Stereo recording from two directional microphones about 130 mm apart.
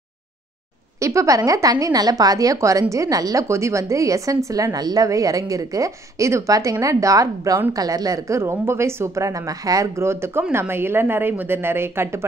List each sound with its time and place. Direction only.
0.9 s a woman's voice: 25° right (ahead or behind)